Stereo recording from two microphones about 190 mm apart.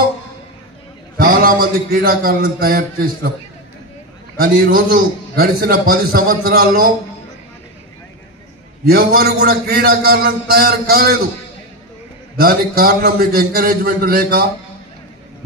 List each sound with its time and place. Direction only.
1.1 s a man's voice: 50° right (ahead or behind)
4.4 s a man's voice: 50° right (ahead or behind)
8.8 s a man's voice: 50° right (ahead or behind)
12.4 s a man's voice: 50° right (ahead or behind)